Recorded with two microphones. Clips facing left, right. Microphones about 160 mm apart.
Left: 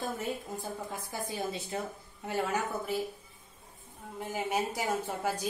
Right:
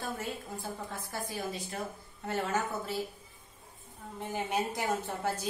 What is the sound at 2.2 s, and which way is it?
Speech, 10° left (ahead or behind).